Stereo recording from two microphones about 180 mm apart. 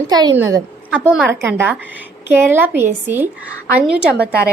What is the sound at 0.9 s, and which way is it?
A woman's voice, 5° right (ahead or behind).